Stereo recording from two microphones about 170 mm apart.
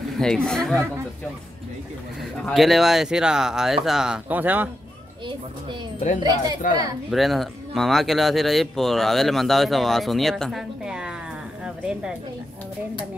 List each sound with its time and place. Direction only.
0.2 s speech: 5° left (ahead or behind)
2.4 s speech: centre (ahead or behind)
6.2 s speech: 25° right (ahead or behind)
7.1 s speech: centre (ahead or behind)
11.6 s a sound: 5° right (ahead or behind)